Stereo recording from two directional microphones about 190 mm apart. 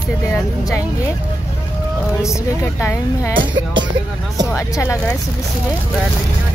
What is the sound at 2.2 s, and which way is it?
Speech, 15° left (ahead or behind).